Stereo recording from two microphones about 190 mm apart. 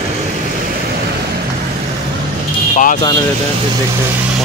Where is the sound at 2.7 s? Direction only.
40° left (ahead or behind).